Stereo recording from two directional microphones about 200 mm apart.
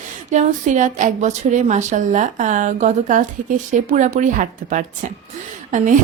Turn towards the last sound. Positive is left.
turn(degrees=-40)  # may be behind; listen again after turning